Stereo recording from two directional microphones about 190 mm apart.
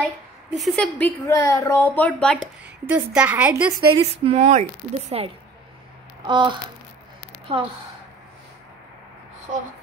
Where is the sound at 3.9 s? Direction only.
30° right (ahead or behind).